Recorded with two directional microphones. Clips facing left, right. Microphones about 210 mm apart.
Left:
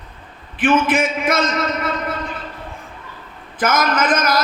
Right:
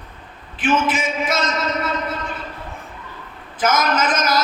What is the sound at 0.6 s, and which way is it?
Speech, 55° left (ahead or behind).